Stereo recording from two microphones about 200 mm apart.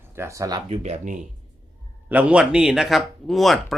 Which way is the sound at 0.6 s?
35° right (ahead or behind).